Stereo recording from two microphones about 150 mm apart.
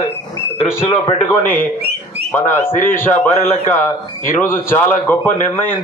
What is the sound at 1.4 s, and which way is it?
A man's voice, 15° left (ahead or behind).